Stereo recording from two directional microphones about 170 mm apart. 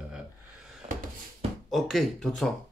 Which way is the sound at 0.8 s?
45° right (ahead or behind).